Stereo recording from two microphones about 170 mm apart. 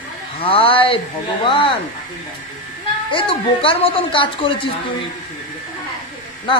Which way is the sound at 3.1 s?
30° left (ahead or behind).